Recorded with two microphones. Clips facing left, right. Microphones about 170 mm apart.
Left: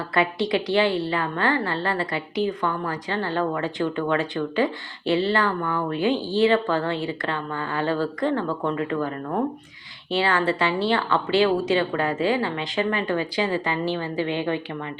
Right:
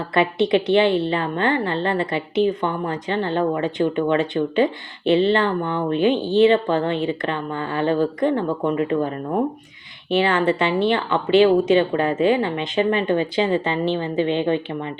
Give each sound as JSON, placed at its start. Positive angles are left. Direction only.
{"t": 0.1, "sound": "a woman's voice", "side_deg": -25}